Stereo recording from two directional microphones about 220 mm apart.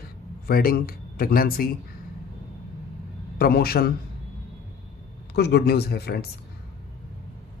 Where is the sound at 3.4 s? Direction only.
45° left (ahead or behind).